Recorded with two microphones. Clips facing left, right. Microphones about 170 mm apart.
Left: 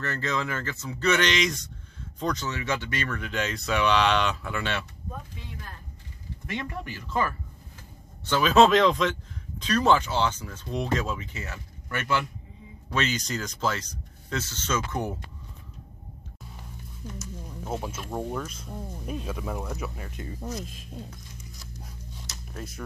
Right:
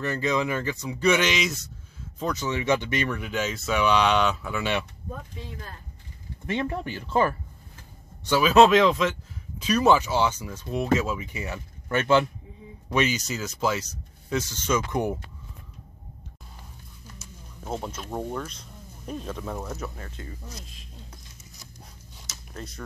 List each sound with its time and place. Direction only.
0.0 s speech: 15° right (ahead or behind)
6.4 s speech: 30° right (ahead or behind)
8.3 s speech: 5° right (ahead or behind); by 12.3 s 25° right (ahead or behind)
12.9 s speech: 10° right (ahead or behind)
17.6 s speech: 5° left (ahead or behind)
18.1 s speech: 5° right (ahead or behind)
18.5 s speech: 5° left (ahead or behind)
19.8 s speech: 15° left (ahead or behind)
22.3 s a sound: centre (ahead or behind)